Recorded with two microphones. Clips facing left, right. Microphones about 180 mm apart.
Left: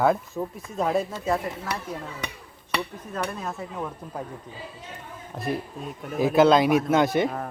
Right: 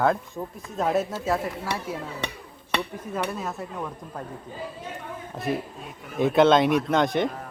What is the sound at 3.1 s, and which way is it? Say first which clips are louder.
Speech: right 1 dB; 5° right (ahead or behind).